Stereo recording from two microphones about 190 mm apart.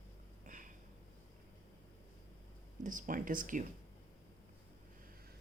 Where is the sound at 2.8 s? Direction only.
45° right (ahead or behind).